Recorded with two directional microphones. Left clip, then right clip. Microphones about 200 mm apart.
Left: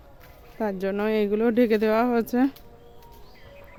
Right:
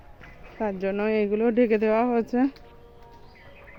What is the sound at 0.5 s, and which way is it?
Speech, 10° left (ahead or behind).